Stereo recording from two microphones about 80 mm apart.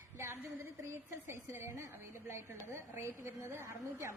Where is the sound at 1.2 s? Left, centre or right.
Right.